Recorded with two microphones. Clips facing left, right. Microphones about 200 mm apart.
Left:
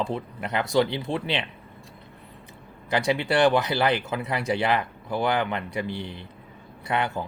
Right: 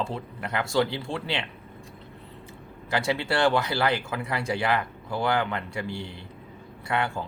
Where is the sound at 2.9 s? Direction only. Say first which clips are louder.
Left 3 dB; 20° left (ahead or behind).